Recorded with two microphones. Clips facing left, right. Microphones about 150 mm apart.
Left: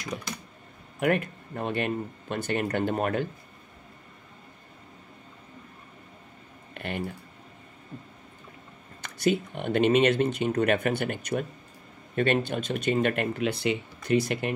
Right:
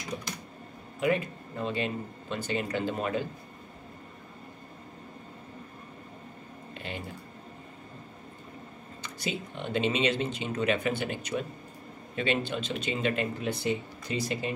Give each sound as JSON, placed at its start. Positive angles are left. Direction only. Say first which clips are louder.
{"t": 0.9, "sound": "speech", "louder": "left 2 dB", "side_deg": 60}
{"t": 6.7, "sound": "typing", "louder": "left 5 dB", "side_deg": 60}
{"t": 9.0, "sound": "speech", "louder": "left 9 dB", "side_deg": 55}